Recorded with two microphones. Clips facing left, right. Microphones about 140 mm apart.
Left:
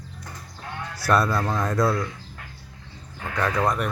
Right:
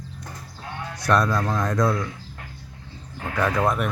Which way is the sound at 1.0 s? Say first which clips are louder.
Even; 5° left (ahead or behind).